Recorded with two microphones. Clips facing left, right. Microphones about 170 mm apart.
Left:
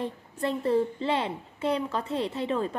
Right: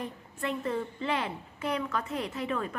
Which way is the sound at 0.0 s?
30° left (ahead or behind).